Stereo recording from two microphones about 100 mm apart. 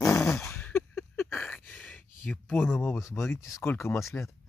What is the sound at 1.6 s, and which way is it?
Gasp, 15° left (ahead or behind).